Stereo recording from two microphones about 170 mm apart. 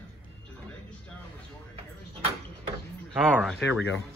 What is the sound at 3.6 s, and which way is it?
Speech, 90° left.